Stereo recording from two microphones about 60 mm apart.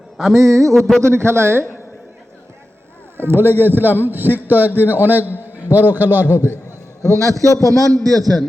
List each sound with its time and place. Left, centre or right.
0.2 s speech: centre
0.4 s a man's voice: right
0.7 s speech: centre
1.0 s a man's voice: right
3.2 s a man's voice: right
7.0 s a man's voice: right